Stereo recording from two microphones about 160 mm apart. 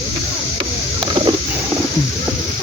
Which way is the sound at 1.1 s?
30° right (ahead or behind).